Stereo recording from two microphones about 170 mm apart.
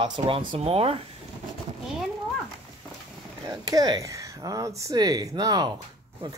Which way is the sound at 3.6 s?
20° right (ahead or behind).